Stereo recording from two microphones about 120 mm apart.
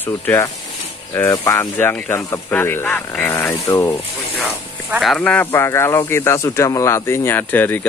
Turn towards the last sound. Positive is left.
turn(degrees=15)  # may be behind; listen again after turning